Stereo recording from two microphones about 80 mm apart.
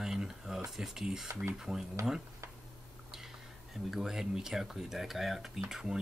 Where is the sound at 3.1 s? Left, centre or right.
Centre.